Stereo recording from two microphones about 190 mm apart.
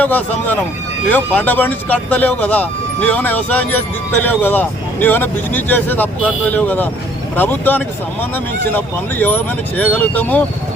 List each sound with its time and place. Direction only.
0.0 s speech: 10° left (ahead or behind)